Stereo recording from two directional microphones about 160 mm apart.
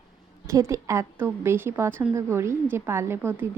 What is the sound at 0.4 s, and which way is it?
A woman's voice, 20° right (ahead or behind).